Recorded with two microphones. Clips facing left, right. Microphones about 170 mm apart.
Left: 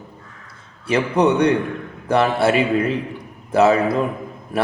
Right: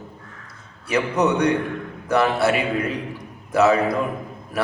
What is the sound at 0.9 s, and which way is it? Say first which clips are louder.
A man's voice: left 3 dB; 30° left (ahead or behind).